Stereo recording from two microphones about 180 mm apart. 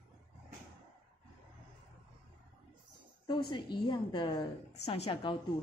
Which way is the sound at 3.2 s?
25° left (ahead or behind).